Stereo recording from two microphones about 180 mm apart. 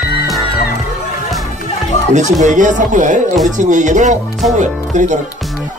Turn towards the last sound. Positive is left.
turn(degrees=-40)  # may be behind; listen again after turning